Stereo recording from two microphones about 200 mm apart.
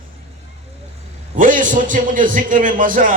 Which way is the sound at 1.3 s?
40° right (ahead or behind).